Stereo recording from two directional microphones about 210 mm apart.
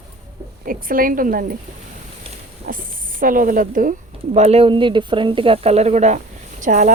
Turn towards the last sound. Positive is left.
turn(degrees=-35)  # may be behind; listen again after turning